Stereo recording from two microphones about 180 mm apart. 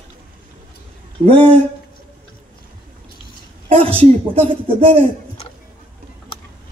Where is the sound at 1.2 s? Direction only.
30° right (ahead or behind).